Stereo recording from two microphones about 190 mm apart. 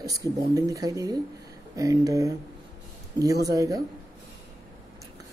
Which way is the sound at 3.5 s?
15° right (ahead or behind).